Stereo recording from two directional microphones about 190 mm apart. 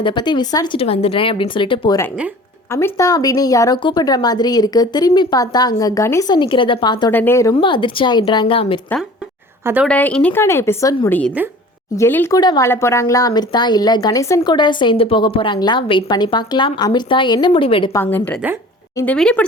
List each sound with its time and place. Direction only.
0.0 s speech: 25° left (ahead or behind)
7.1 s a woman's voice: 10° left (ahead or behind)
7.5 s speech: 25° left (ahead or behind)
9.8 s a woman's voice: 5° left (ahead or behind); by 17.9 s 25° left (ahead or behind)
17.9 s a woman's voice: 10° left (ahead or behind)